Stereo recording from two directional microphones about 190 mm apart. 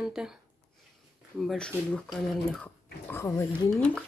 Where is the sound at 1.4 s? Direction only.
5° left (ahead or behind).